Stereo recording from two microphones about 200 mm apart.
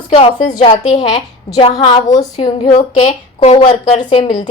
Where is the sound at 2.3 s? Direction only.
35° left (ahead or behind).